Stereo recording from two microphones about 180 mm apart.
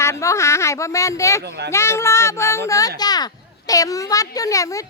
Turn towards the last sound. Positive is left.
turn(degrees=20)  # may be behind; listen again after turning